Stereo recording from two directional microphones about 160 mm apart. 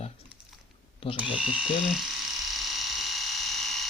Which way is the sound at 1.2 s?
5° right (ahead or behind).